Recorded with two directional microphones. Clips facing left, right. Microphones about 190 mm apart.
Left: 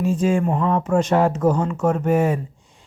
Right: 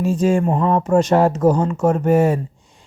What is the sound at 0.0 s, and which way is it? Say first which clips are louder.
Speech: right 2 dB; 40° right (ahead or behind).